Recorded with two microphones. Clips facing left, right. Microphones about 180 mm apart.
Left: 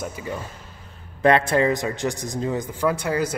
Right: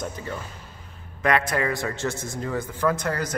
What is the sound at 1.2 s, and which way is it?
A man's voice, 30° left (ahead or behind).